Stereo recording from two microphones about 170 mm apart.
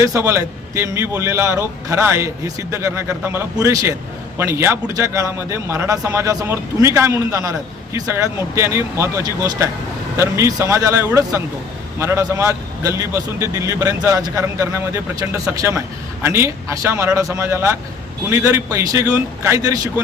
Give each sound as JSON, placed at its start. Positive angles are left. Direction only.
{"t": 0.0, "sound": "a man's voice", "side_deg": -15}